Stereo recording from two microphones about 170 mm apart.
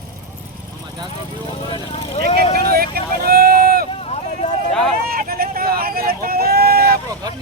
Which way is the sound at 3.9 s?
35° left (ahead or behind).